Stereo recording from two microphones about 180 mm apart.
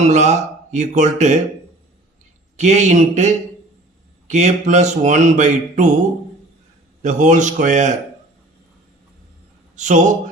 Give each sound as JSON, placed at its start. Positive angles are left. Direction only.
{"t": 0.1, "sound": "speech", "side_deg": -40}
{"t": 2.6, "sound": "speech", "side_deg": -40}
{"t": 7.0, "sound": "speech", "side_deg": -45}
{"t": 9.7, "sound": "a man's voice", "side_deg": -45}